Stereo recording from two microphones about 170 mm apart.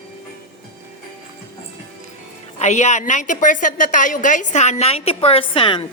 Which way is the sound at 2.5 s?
45° left (ahead or behind).